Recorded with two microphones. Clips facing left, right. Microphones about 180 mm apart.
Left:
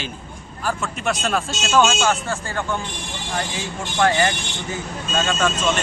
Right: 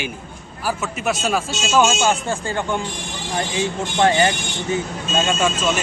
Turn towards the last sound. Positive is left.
turn(degrees=-5)  # may be behind; listen again after turning